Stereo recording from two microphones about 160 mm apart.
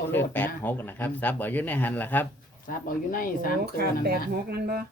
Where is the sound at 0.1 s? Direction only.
10° left (ahead or behind).